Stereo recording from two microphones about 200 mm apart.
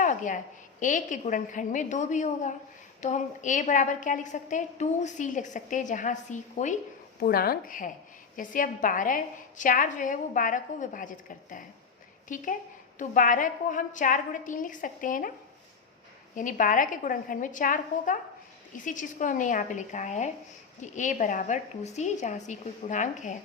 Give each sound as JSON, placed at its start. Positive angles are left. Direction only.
{"t": 0.0, "sound": "a sound", "side_deg": 40}
{"t": 0.8, "sound": "a woman's voice", "side_deg": 40}
{"t": 7.2, "sound": "a woman's voice", "side_deg": 50}
{"t": 16.3, "sound": "a woman's voice", "side_deg": 40}